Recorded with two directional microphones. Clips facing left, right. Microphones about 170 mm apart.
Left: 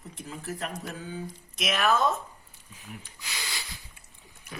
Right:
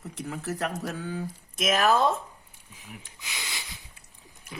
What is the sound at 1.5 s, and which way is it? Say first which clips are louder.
Speech: right 3 dB; 45° right (ahead or behind).